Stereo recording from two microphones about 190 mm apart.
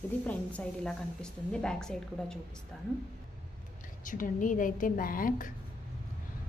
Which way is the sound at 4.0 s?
45° left (ahead or behind).